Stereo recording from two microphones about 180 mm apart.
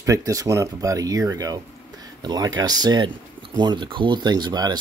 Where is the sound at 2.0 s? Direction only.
20° right (ahead or behind).